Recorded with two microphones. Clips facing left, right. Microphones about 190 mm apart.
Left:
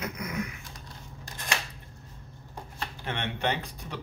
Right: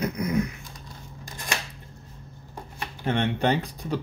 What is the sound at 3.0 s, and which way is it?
Speech, 35° right (ahead or behind).